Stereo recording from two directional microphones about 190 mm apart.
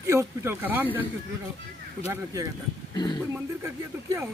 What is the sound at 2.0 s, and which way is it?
Speech, 20° right (ahead or behind).